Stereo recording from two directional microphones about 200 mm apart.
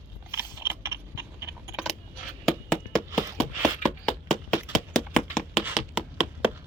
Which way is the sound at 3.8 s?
35° left (ahead or behind).